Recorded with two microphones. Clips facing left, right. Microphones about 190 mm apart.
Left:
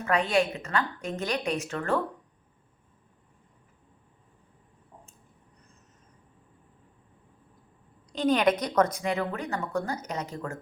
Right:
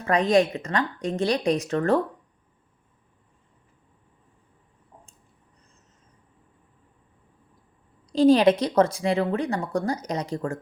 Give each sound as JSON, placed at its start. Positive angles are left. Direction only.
{"t": 0.0, "sound": "a woman's voice", "side_deg": -35}
{"t": 8.1, "sound": "a woman's voice", "side_deg": -30}